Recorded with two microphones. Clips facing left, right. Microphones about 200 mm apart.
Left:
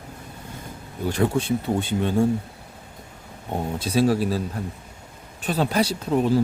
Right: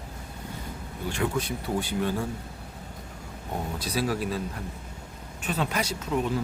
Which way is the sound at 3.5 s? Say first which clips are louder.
Left 6 dB; 25° left (ahead or behind).